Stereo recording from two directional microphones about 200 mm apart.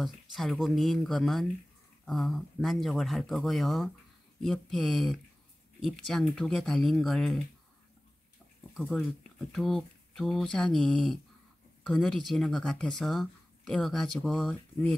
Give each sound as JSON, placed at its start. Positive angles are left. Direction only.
{"t": 0.0, "sound": "speech", "side_deg": 0}
{"t": 8.7, "sound": "speech", "side_deg": 0}